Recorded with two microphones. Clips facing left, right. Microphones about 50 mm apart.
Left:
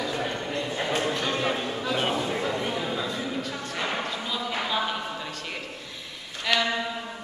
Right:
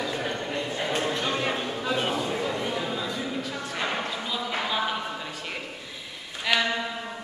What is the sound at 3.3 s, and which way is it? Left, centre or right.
Music, centre.